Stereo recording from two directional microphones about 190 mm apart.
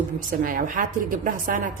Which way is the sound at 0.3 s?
45° right (ahead or behind).